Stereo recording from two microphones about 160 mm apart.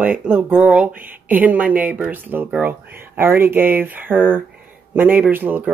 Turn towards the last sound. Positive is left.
turn(degrees=-10)  # may be behind; listen again after turning